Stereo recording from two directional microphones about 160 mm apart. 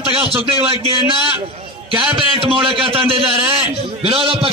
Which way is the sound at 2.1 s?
35° right (ahead or behind).